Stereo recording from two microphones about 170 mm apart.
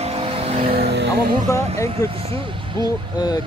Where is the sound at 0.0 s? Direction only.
35° right (ahead or behind).